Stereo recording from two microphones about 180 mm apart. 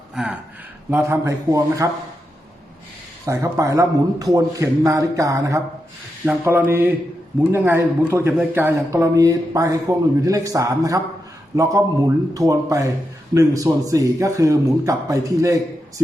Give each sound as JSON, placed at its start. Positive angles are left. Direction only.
{"t": 0.1, "sound": "speech", "side_deg": -5}
{"t": 0.9, "sound": "speech", "side_deg": -15}
{"t": 3.2, "sound": "speech", "side_deg": -15}